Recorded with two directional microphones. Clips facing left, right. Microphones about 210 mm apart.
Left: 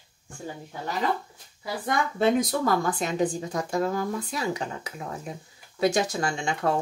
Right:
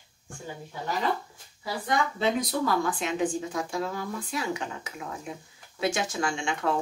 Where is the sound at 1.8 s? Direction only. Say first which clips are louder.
Left 3 dB; 50° left (ahead or behind).